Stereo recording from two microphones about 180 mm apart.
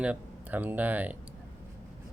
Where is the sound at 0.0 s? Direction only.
10° right (ahead or behind).